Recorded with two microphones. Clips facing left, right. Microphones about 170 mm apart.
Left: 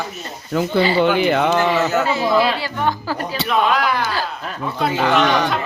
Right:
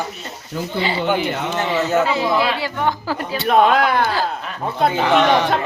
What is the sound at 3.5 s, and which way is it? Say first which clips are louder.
Speech: right 4 dB; 55° right (ahead or behind).